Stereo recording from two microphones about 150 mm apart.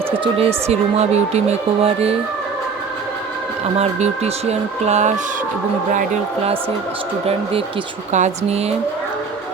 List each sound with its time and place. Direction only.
0.3 s speech: 45° right (ahead or behind)
3.8 s speech: 45° right (ahead or behind)
8.1 s speech: 50° right (ahead or behind)